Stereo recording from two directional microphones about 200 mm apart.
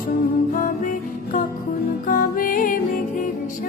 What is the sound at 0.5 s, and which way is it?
Music, 40° left (ahead or behind).